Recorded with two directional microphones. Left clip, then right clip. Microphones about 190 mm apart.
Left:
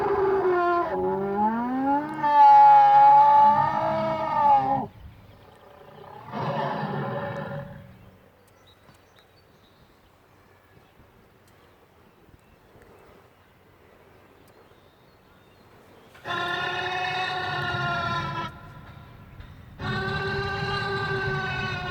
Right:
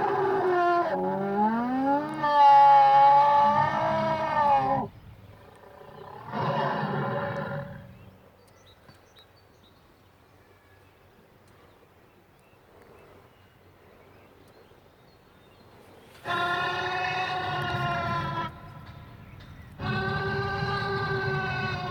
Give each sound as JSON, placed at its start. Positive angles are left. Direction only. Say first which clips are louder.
{"t": 0.0, "sound": "a sound", "louder": "left 2 dB", "side_deg": -55}
{"t": 6.0, "sound": "roar", "louder": "right 1 dB", "side_deg": -10}
{"t": 16.2, "sound": "vehicle", "louder": "right 1 dB", "side_deg": 5}
{"t": 19.8, "sound": "music", "louder": "left 1 dB", "side_deg": 5}